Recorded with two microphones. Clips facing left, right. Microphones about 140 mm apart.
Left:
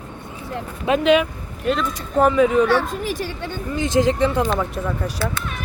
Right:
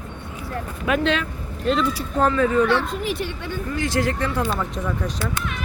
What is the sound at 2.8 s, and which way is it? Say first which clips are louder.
Speech: left 1 dB; 45° left (ahead or behind).